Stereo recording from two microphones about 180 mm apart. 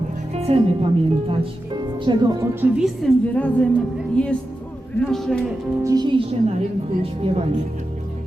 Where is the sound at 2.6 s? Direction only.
5° right (ahead or behind).